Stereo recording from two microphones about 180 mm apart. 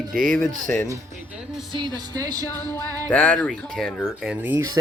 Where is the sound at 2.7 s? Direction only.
10° left (ahead or behind).